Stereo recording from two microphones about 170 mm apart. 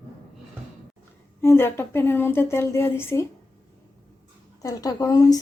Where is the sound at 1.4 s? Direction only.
15° left (ahead or behind).